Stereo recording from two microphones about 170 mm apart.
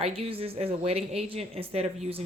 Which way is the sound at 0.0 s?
35° right (ahead or behind).